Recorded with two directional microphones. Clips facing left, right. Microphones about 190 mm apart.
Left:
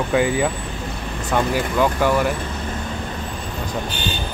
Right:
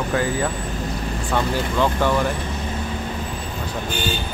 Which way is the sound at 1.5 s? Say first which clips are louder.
Left 2 dB; 10° left (ahead or behind).